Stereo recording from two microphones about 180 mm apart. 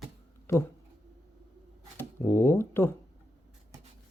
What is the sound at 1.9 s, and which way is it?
Speech, 15° left (ahead or behind).